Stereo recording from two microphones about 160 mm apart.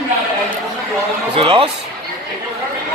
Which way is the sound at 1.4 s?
35° right (ahead or behind).